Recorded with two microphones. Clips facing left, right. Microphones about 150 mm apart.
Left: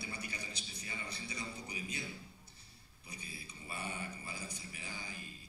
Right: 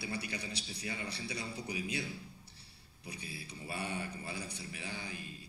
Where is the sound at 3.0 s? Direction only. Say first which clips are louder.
Right 5 dB; 65° right (ahead or behind).